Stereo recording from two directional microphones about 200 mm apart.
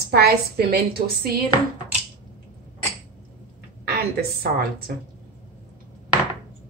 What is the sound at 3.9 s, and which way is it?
Speech, 50° right (ahead or behind).